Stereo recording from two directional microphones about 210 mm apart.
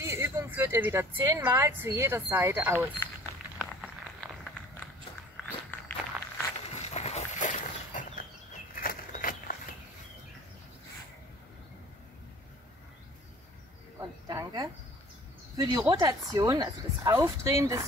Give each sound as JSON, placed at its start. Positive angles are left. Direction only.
{"t": 0.0, "sound": "speech", "side_deg": -10}
{"t": 5.7, "sound": "walk", "side_deg": 10}
{"t": 6.8, "sound": "a sound", "side_deg": 30}
{"t": 14.2, "sound": "insect", "side_deg": -20}
{"t": 15.5, "sound": "speech", "side_deg": -15}